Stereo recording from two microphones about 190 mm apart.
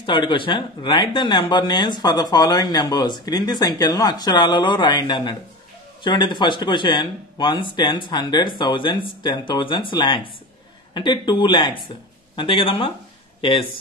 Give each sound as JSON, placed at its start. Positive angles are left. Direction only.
{"t": 0.0, "sound": "speech", "side_deg": 25}